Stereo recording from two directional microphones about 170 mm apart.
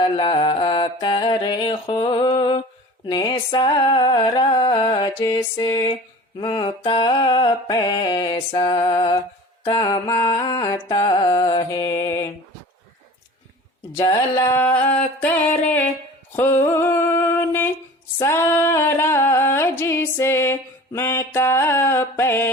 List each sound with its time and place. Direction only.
0.2 s music: 25° left (ahead or behind)
14.0 s music: 20° left (ahead or behind)
16.3 s a sound: 15° left (ahead or behind)